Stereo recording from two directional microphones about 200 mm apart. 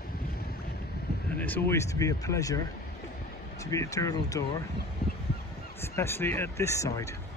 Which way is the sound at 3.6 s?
15° left (ahead or behind).